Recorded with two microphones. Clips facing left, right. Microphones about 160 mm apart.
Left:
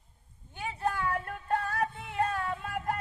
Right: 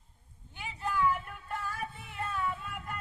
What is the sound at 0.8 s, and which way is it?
Music, 65° left (ahead or behind).